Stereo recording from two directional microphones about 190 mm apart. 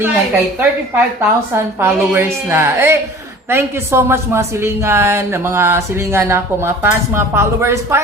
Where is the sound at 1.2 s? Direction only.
10° right (ahead or behind).